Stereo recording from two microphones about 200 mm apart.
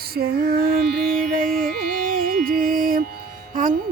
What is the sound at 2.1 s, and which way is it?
Music, 45° right (ahead or behind).